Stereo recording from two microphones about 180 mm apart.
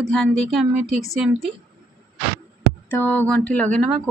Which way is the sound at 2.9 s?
10° left (ahead or behind).